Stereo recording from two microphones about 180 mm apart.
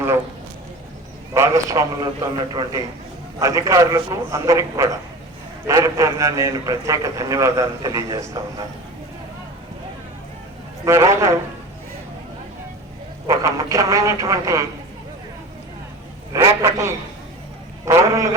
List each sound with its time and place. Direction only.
1.3 s a man's voice: 15° right (ahead or behind)
10.8 s a man's voice: 15° right (ahead or behind)
13.2 s a man's voice: 20° right (ahead or behind)
16.3 s a man's voice: 20° right (ahead or behind)